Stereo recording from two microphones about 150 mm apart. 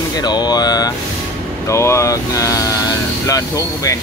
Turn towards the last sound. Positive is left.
turn(degrees=20)  # may be behind; listen again after turning